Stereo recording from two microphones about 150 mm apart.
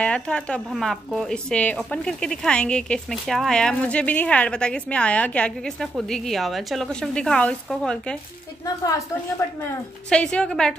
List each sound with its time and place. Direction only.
0.0 s speech: 5° left (ahead or behind)
8.6 s a woman's voice: 20° left (ahead or behind)
10.0 s speech: 5° left (ahead or behind)